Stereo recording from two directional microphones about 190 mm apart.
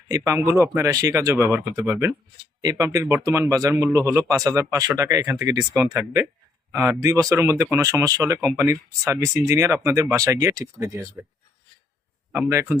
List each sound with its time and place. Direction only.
0.1 s speech: 15° right (ahead or behind)
12.3 s speech: 10° right (ahead or behind)